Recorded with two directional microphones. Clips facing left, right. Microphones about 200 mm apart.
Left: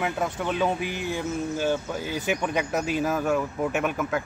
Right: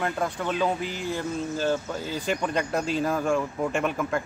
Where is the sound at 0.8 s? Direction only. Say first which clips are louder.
Left 1 dB; 65° left (ahead or behind).